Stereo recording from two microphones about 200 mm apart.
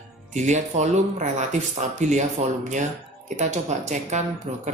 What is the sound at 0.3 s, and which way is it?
Speech, 35° right (ahead or behind).